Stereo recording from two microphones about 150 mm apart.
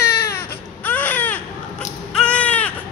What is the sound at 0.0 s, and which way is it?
Baby cry, 90° left.